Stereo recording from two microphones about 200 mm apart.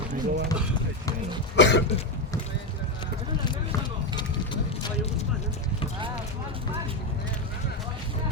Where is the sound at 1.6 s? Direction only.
65° left (ahead or behind).